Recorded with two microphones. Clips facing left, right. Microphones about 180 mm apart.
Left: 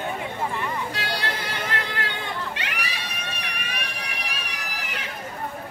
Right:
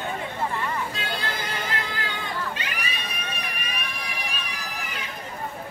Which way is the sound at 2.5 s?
75° left (ahead or behind).